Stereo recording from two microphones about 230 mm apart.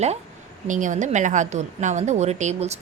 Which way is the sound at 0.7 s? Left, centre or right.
Right.